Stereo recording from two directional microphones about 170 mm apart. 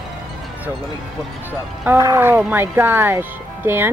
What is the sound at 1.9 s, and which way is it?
Speech, 15° right (ahead or behind).